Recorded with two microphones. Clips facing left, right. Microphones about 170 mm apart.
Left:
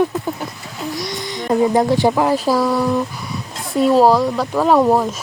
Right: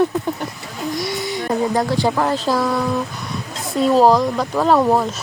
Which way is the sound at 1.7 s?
15° left (ahead or behind).